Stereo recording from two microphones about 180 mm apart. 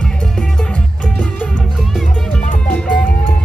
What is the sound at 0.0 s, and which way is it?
Music, 5° left (ahead or behind).